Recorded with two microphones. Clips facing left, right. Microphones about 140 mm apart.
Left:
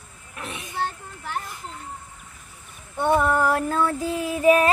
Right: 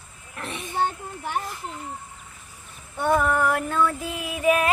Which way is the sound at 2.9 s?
20° left (ahead or behind).